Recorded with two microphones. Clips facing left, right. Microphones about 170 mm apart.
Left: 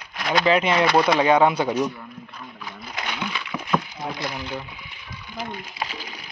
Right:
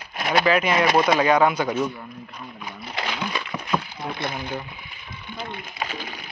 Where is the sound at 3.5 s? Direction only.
10° right (ahead or behind).